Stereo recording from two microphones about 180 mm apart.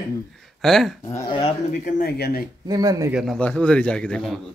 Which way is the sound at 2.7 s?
20° right (ahead or behind).